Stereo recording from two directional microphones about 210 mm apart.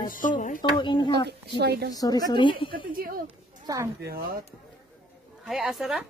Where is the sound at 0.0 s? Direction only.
40° left (ahead or behind).